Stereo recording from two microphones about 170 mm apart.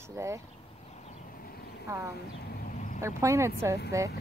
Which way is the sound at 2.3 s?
70° left (ahead or behind).